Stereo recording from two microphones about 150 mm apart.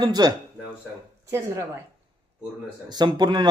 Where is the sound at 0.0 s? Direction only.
30° right (ahead or behind).